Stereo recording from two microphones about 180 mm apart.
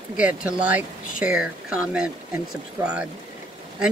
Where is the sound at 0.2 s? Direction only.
5° right (ahead or behind).